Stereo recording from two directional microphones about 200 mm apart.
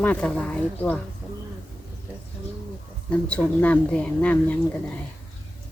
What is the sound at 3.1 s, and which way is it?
Speech, 5° left (ahead or behind).